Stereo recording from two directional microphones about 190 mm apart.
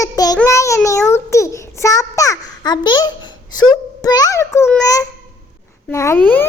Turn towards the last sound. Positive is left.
turn(degrees=10)  # may be behind; listen again after turning